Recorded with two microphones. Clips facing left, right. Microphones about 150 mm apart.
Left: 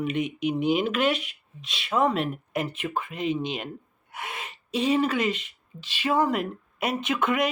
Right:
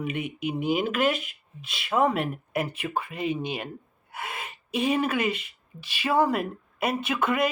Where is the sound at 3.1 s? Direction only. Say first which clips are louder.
Left 3 dB; 10° right (ahead or behind).